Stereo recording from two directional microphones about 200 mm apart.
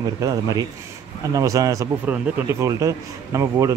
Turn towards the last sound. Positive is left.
turn(degrees=-15)  # may be behind; listen again after turning